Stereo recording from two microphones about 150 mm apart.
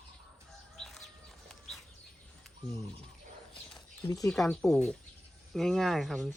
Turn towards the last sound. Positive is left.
turn(degrees=0)  # may be behind; listen again after turning